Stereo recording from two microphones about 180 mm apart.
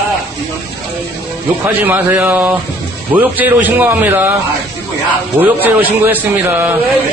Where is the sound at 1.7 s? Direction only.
10° right (ahead or behind).